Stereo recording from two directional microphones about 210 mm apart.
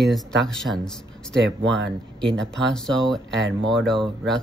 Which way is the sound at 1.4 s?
60° right (ahead or behind).